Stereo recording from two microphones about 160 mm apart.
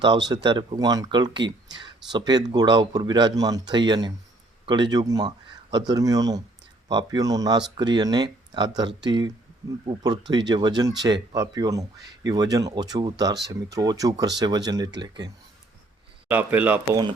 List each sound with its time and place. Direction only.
0.3 s speech: 30° right (ahead or behind)
16.3 s speech: 10° right (ahead or behind)